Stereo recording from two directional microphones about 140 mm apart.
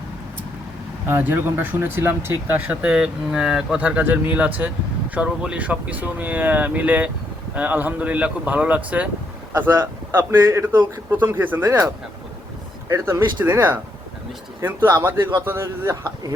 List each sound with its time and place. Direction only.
1.0 s a man's voice: 15° right (ahead or behind)
12.9 s a man's voice: 20° right (ahead or behind)